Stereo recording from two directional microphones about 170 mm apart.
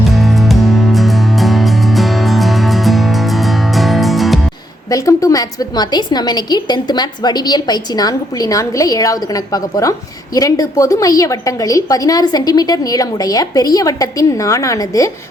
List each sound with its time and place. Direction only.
0.2 s music: centre (ahead or behind)
4.9 s a woman's voice: 20° left (ahead or behind)